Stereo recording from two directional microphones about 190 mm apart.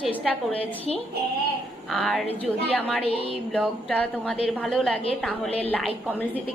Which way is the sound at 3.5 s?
5° left (ahead or behind).